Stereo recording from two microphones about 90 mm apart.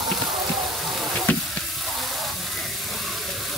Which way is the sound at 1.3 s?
20° left (ahead or behind).